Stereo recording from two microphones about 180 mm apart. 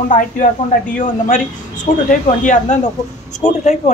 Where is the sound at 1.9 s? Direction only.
40° left (ahead or behind).